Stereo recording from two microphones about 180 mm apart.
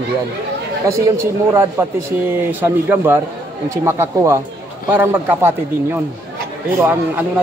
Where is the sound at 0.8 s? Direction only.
15° right (ahead or behind).